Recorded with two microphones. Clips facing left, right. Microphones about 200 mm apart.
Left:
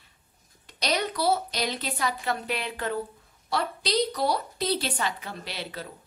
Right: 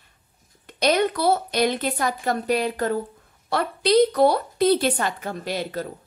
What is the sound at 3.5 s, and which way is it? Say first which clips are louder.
A woman's voice: right 8 dB; 55° right (ahead or behind).